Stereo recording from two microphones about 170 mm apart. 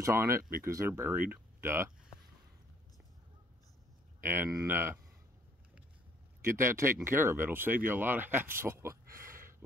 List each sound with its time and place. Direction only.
0.0 s speech: 15° right (ahead or behind)
4.2 s speech: 10° right (ahead or behind)
6.4 s speech: 15° right (ahead or behind)
9.2 s a sound: 15° right (ahead or behind)